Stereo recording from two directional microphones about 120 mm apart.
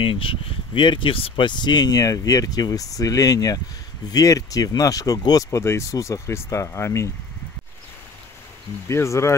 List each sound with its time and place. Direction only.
0.0 s speech: 50° left (ahead or behind); by 7.1 s 20° left (ahead or behind)
8.8 s speech: 25° left (ahead or behind)